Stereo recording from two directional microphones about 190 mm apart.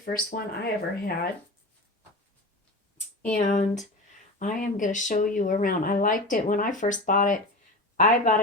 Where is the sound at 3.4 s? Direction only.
45° left (ahead or behind).